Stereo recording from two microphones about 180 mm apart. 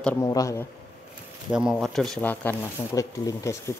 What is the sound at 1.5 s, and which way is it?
Speech, 5° right (ahead or behind).